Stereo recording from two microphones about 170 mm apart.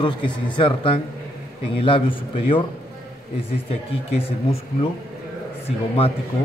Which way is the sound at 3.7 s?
35° left (ahead or behind).